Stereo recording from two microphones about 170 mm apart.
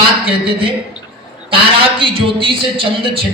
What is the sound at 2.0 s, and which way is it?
A man's voice, 30° right (ahead or behind).